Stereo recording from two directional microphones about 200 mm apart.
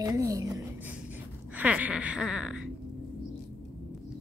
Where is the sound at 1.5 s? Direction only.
10° right (ahead or behind).